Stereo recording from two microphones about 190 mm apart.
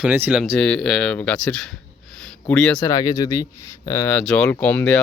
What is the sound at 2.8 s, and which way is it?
Speech, 20° left (ahead or behind).